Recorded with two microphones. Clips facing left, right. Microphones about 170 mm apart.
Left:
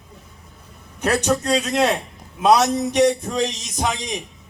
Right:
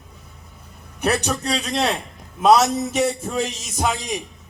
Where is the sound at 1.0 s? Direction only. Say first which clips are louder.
Left 1 dB; 10° right (ahead or behind).